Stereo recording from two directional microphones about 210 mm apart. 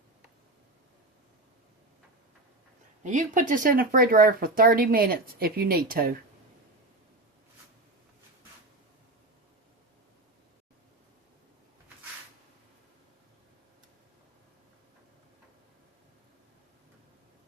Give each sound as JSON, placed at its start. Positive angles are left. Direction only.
{"t": 3.0, "sound": "speech", "side_deg": -35}